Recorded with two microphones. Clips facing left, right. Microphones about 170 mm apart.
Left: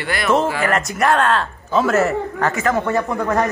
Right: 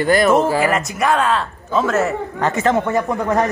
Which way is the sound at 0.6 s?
5° right (ahead or behind).